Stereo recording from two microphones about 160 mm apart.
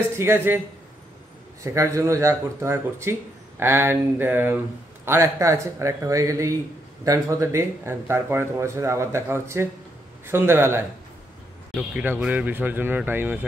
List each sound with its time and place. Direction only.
0.2 s speech: 15° right (ahead or behind)
1.6 s speech: 20° right (ahead or behind)